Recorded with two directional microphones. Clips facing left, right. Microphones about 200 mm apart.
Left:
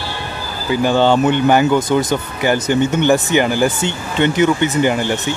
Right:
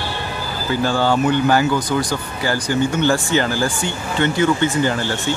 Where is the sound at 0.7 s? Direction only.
20° left (ahead or behind).